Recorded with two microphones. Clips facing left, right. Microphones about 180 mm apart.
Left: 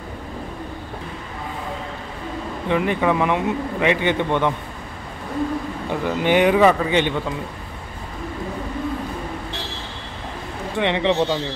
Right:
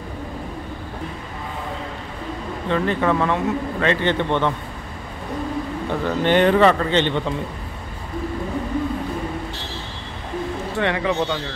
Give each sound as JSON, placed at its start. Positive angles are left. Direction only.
{"t": 2.7, "sound": "a man's voice", "side_deg": 15}
{"t": 5.9, "sound": "a man's voice", "side_deg": 10}
{"t": 10.8, "sound": "speech", "side_deg": 20}